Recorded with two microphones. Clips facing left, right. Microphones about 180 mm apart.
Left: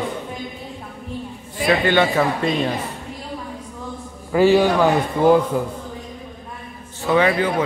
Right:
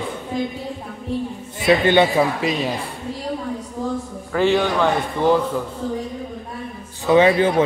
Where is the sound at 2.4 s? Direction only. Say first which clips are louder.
Left 1 dB; 5° right (ahead or behind).